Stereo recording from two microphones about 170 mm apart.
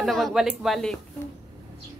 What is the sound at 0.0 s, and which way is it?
Speech, centre (ahead or behind).